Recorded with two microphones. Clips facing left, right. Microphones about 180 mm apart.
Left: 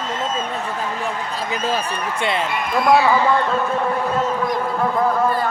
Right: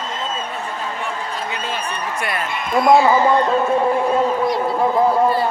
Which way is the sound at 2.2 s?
25° left (ahead or behind).